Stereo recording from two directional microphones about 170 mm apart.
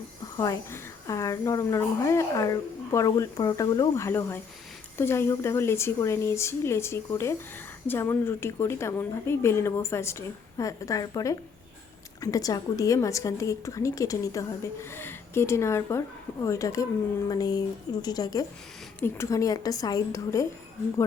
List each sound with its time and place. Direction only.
0.3 s a woman's voice: 20° left (ahead or behind)